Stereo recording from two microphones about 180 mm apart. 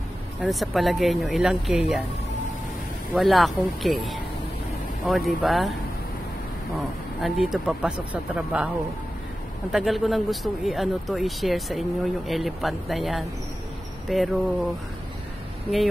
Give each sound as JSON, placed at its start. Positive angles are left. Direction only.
{"t": 0.4, "sound": "speech", "side_deg": 0}
{"t": 3.2, "sound": "speech", "side_deg": 0}
{"t": 7.2, "sound": "speech", "side_deg": 0}
{"t": 9.7, "sound": "speech", "side_deg": 0}